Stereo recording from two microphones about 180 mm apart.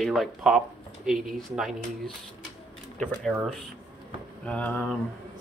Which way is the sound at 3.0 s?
5° right (ahead or behind).